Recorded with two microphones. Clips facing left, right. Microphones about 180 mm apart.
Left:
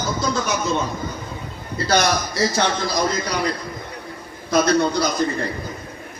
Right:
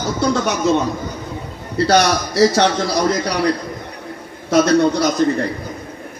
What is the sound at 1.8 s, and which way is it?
Speech, 75° right (ahead or behind).